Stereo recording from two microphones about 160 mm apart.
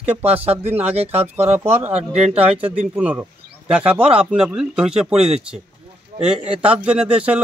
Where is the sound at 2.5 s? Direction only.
35° right (ahead or behind).